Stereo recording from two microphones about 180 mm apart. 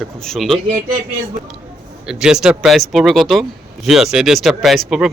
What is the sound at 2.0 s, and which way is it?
Speech, 5° right (ahead or behind).